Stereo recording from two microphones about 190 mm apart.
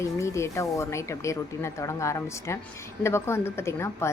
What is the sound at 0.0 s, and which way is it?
Speech, 15° left (ahead or behind).